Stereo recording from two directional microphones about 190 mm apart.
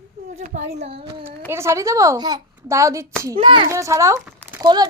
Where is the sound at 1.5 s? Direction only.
15° right (ahead or behind).